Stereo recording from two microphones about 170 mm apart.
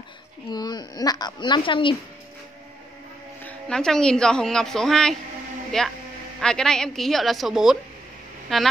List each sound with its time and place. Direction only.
0.5 s a woman's voice: 25° left (ahead or behind)
3.4 s a woman's voice: 5° left (ahead or behind)